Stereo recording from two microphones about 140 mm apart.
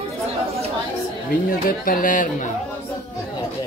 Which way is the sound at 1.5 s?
80° left.